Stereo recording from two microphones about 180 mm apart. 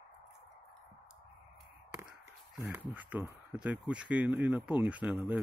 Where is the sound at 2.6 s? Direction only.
10° right (ahead or behind).